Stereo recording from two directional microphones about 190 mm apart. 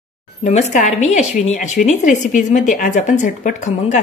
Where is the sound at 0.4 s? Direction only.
35° left (ahead or behind).